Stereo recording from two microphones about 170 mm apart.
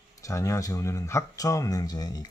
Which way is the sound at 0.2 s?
20° left (ahead or behind).